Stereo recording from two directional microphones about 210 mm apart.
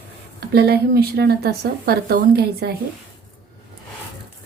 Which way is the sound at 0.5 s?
50° right (ahead or behind).